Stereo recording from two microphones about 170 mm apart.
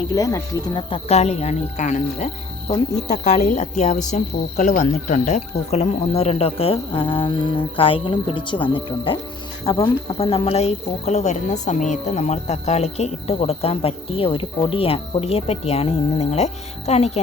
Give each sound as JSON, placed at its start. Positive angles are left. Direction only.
{"t": 0.1, "sound": "speech", "side_deg": 20}